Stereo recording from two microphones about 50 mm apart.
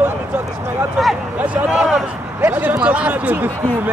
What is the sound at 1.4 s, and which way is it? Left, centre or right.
Speech, right.